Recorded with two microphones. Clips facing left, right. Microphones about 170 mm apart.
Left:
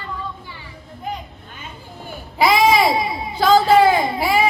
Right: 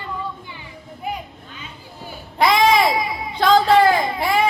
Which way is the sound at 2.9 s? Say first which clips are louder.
Left 2 dB; 25° left (ahead or behind).